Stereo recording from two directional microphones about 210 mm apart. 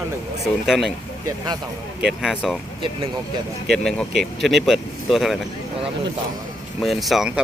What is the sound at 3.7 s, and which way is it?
Speech, 5° left (ahead or behind).